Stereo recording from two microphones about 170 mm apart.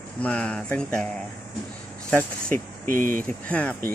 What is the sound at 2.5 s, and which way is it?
Speech, 55° right (ahead or behind).